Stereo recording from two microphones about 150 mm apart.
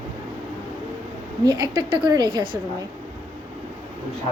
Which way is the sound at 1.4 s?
25° right (ahead or behind).